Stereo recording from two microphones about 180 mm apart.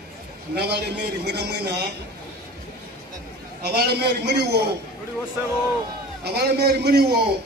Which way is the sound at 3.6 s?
60° right (ahead or behind).